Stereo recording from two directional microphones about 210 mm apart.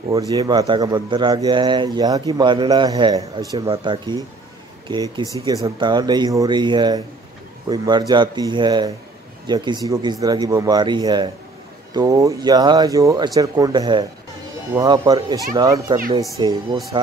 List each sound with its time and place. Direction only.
0.1 s a man's voice: 15° right (ahead or behind)
5.4 s a man's voice: 20° right (ahead or behind)